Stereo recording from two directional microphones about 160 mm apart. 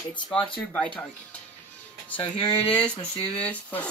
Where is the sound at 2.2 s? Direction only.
30° left (ahead or behind).